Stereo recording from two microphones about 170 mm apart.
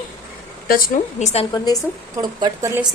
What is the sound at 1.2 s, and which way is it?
Speech, 35° left (ahead or behind).